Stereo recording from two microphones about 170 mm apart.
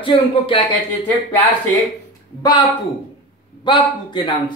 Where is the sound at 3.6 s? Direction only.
30° left (ahead or behind).